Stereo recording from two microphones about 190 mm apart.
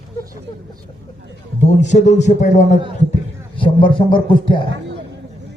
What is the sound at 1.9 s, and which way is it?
Speech, 35° left (ahead or behind).